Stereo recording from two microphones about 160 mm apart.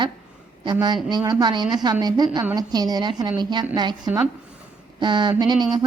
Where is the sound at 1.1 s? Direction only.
25° right (ahead or behind).